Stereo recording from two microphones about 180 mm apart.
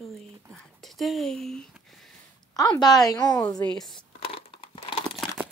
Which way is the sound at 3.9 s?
30° left (ahead or behind).